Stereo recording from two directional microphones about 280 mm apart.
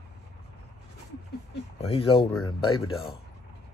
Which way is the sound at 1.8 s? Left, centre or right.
Centre.